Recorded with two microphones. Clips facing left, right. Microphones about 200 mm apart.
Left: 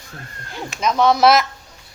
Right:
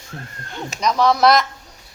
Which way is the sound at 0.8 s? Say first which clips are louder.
Left 1 dB; centre (ahead or behind).